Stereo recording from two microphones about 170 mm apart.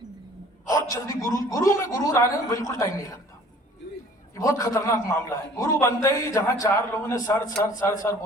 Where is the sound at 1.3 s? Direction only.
20° left (ahead or behind).